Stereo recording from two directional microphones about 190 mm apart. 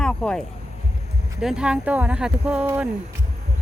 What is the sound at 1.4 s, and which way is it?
Speech, 5° right (ahead or behind).